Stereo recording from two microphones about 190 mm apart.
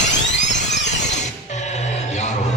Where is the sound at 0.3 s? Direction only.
40° left (ahead or behind).